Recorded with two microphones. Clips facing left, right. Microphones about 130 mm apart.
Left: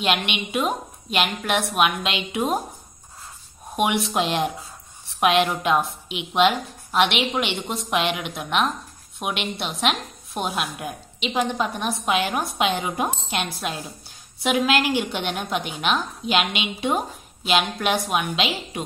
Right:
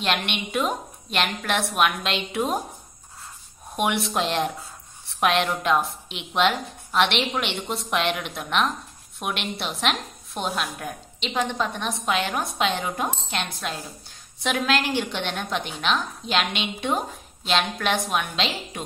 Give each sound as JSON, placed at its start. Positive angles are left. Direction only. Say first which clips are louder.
{"t": 0.0, "sound": "a woman's voice", "louder": "left 2 dB", "side_deg": 5}
{"t": 3.7, "sound": "a woman's voice", "louder": "left 2 dB", "side_deg": 5}